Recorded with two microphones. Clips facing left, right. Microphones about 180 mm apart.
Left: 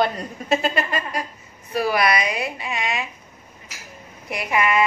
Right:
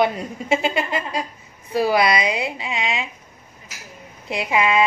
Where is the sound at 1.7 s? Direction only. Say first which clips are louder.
Right 2 dB; 25° right (ahead or behind).